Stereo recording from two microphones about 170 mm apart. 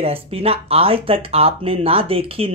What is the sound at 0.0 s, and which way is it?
Speech, 35° right (ahead or behind).